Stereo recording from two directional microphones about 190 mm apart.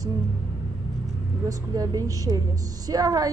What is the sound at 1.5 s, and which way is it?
A woman's voice, 20° right (ahead or behind).